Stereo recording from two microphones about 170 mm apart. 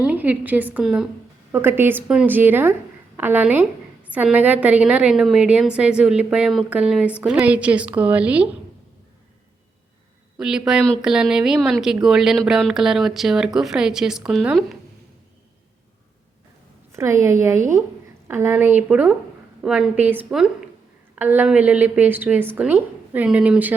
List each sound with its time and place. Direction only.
0.0 s a woman's voice: 10° right (ahead or behind)
10.3 s speech: 5° right (ahead or behind)
16.9 s a woman's voice: 15° right (ahead or behind)